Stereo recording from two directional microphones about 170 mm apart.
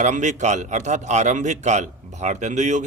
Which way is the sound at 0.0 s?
45° right (ahead or behind).